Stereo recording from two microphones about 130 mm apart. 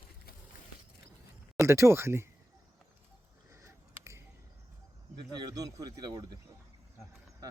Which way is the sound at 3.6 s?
20° right (ahead or behind).